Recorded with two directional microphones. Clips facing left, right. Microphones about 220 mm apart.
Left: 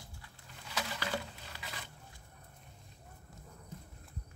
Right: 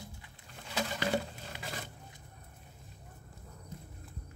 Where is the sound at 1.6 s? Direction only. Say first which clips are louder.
Right 6 dB; 45° right (ahead or behind).